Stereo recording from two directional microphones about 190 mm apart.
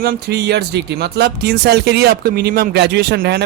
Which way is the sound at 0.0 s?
55° right (ahead or behind).